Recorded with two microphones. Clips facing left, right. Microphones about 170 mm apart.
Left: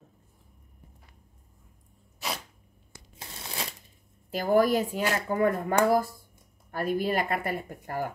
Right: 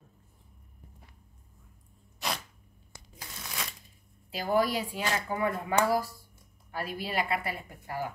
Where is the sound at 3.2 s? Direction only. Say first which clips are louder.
Left 2 dB; 30° left (ahead or behind).